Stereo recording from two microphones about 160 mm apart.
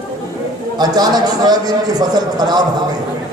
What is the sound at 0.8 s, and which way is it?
A man's voice, 25° right (ahead or behind).